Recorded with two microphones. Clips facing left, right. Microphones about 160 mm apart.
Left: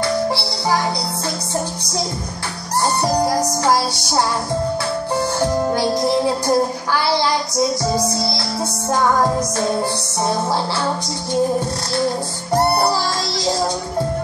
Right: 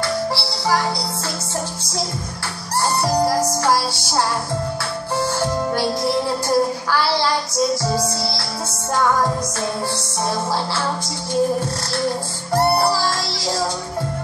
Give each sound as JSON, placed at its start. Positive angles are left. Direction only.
{"t": 0.3, "sound": "music", "side_deg": 20}
{"t": 3.3, "sound": "music", "side_deg": 20}
{"t": 5.4, "sound": "music", "side_deg": 20}